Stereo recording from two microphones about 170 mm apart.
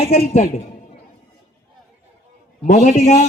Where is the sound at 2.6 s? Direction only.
45° left (ahead or behind).